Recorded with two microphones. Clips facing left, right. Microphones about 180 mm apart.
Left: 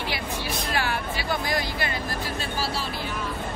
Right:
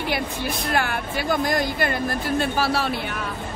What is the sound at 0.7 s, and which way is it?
Speech, 55° right (ahead or behind).